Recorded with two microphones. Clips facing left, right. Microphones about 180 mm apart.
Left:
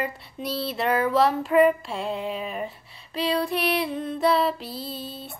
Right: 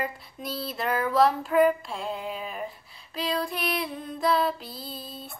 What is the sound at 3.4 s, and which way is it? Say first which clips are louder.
Female singing: left 5 dB; 70° left (ahead or behind).